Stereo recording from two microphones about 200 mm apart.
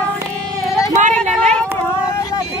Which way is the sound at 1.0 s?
35° right (ahead or behind).